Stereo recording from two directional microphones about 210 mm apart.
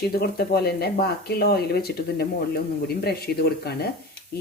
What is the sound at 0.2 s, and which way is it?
A man's voice, 50° left (ahead or behind).